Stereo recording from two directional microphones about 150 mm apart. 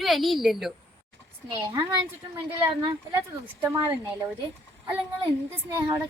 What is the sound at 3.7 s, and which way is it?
Speech, 25° right (ahead or behind).